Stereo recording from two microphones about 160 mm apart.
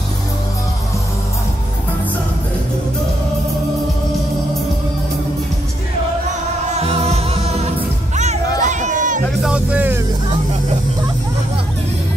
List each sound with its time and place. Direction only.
6.7 s music: 40° right (ahead or behind)
8.6 s a sound: 50° right (ahead or behind)
9.4 s music: 5° right (ahead or behind)